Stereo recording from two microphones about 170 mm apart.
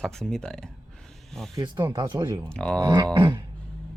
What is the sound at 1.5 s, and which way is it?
Speech, 20° right (ahead or behind).